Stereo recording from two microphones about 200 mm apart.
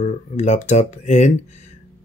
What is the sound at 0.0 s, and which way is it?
Speech, 35° left (ahead or behind).